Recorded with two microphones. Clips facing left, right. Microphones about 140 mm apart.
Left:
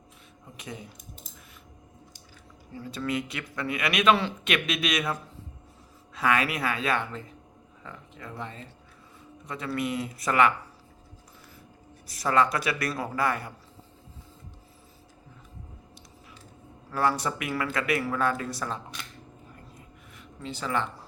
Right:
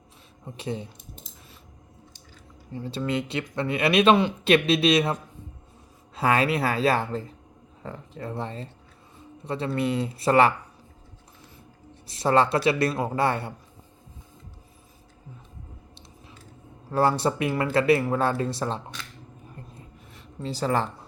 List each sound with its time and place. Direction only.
0.5 s speech: 30° right (ahead or behind)
2.7 s speech: 30° right (ahead or behind)
6.1 s speech: 30° right (ahead or behind)
12.0 s speech: 25° right (ahead or behind)
16.9 s speech: 30° right (ahead or behind)
19.5 s a sound: 30° right (ahead or behind)